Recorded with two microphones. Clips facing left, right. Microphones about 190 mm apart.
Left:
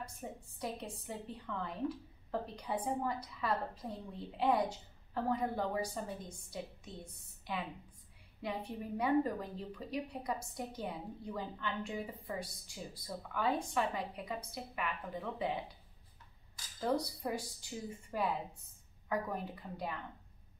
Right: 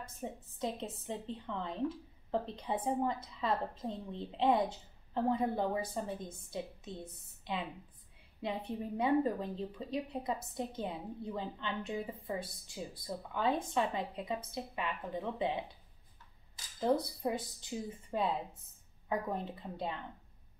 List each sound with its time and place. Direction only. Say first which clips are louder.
0.2 s a woman's voice: right 6 dB; 20° right (ahead or behind)
16.8 s a woman's voice: right 3 dB; 20° right (ahead or behind)